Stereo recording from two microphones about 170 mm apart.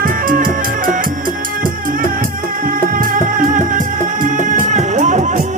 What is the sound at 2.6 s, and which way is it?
Music, 55° right (ahead or behind).